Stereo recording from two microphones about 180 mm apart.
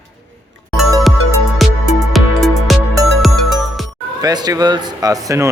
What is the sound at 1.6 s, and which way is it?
Music, centre (ahead or behind).